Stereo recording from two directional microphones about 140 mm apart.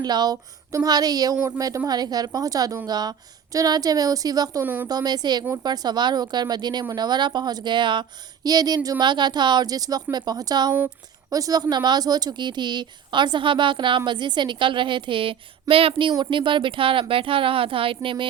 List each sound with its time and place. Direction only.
0.0 s a woman's voice: 30° right (ahead or behind)
4.6 s speech: 15° right (ahead or behind)
4.9 s a woman's voice: 30° right (ahead or behind)